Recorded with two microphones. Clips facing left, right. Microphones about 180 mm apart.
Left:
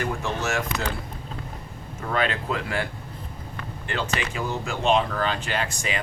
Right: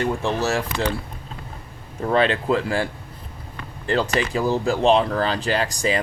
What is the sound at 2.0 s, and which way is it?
Speech, 30° right (ahead or behind).